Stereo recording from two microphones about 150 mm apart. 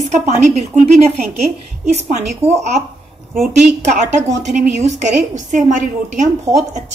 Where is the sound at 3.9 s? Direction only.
50° right (ahead or behind).